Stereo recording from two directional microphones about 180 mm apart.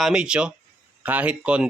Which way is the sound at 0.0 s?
5° right (ahead or behind).